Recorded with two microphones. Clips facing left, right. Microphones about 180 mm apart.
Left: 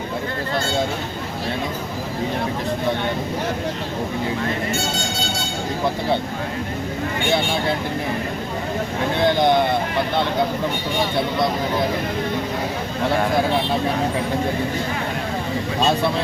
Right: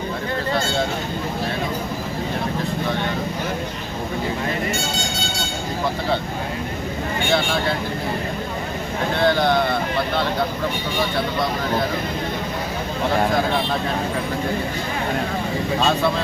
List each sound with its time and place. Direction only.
9.2 s speech: 15° left (ahead or behind)